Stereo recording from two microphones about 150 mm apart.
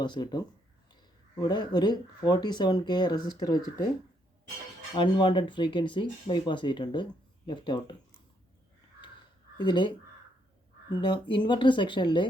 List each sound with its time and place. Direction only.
0.0 s speech: 30° left (ahead or behind)
4.9 s speech: 30° left (ahead or behind)
9.6 s speech: 30° left (ahead or behind)